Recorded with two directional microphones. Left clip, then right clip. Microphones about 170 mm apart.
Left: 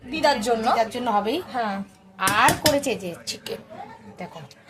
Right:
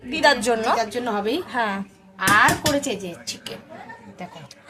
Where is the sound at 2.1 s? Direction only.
30° left (ahead or behind).